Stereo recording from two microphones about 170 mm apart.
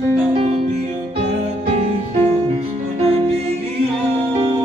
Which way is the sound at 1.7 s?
35° right (ahead or behind).